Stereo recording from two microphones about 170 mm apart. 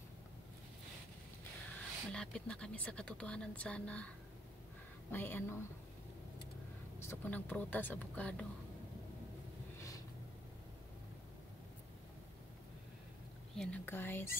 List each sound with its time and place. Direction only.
2.1 s speech: 5° left (ahead or behind)
5.1 s speech: 10° left (ahead or behind)
7.0 s speech: 15° left (ahead or behind)
9.8 s a sound: 20° left (ahead or behind)
13.6 s speech: 10° left (ahead or behind)